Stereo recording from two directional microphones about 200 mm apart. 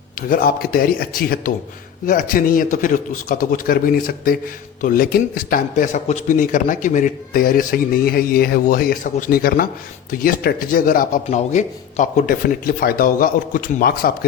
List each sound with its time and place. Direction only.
0.2 s a man's voice: 45° left (ahead or behind)